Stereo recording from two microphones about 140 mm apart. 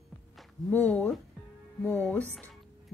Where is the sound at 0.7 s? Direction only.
5° left (ahead or behind).